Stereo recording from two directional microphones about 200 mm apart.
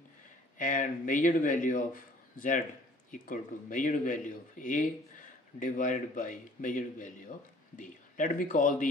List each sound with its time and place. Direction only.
0.6 s a man's voice: 40° left (ahead or behind)